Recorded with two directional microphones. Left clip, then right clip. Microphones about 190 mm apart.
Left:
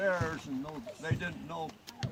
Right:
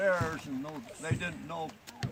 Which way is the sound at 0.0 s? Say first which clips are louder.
Right 2 dB; 10° left (ahead or behind).